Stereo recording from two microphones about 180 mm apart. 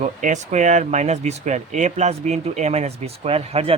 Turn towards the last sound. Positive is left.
turn(degrees=-35)  # may be behind; listen again after turning